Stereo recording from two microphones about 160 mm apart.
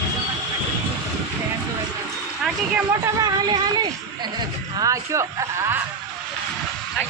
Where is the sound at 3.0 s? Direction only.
25° right (ahead or behind).